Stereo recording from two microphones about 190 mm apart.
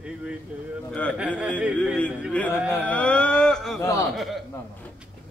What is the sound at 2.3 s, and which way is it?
A man's voice, 5° left (ahead or behind).